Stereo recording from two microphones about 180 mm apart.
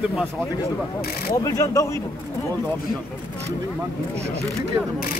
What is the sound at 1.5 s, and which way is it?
Speech, 20° left (ahead or behind).